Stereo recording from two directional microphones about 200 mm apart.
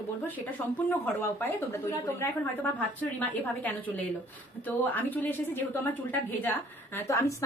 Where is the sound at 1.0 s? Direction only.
10° left (ahead or behind).